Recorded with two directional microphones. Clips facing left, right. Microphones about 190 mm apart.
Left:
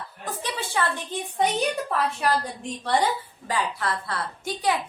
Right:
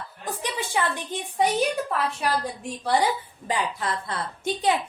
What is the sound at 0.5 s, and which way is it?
Speech, 15° right (ahead or behind).